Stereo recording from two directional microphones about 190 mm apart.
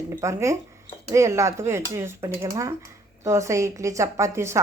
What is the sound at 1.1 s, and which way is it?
A woman's voice, 15° right (ahead or behind).